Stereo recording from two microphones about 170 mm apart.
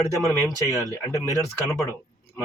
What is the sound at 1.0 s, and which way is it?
Speech, 15° left (ahead or behind).